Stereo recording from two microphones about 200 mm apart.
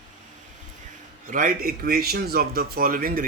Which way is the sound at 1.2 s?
45° right (ahead or behind).